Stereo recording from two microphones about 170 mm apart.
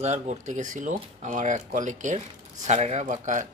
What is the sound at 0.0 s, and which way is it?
Speech, 45° right (ahead or behind).